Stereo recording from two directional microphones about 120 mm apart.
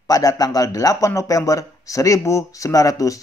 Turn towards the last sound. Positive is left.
turn(degrees=30)  # may be behind; listen again after turning